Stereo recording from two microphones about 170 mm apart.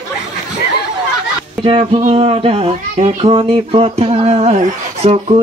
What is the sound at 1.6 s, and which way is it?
Speech, 35° right (ahead or behind).